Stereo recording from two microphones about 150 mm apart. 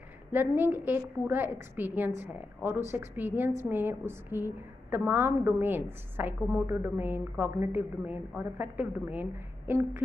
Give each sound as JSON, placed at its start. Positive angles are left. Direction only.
{"t": 0.3, "sound": "a woman's voice", "side_deg": -15}